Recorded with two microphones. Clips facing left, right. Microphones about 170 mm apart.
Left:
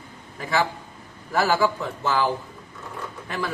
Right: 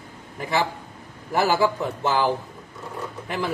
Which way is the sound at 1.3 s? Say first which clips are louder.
Right 1 dB; 20° right (ahead or behind).